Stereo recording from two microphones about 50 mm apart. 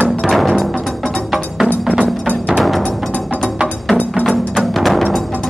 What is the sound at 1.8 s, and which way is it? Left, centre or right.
Music, centre.